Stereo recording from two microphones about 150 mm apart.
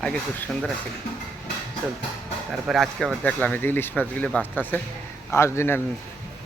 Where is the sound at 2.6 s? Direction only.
Centre (ahead or behind).